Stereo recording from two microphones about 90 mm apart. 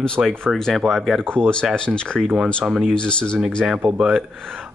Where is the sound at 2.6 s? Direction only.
10° right (ahead or behind).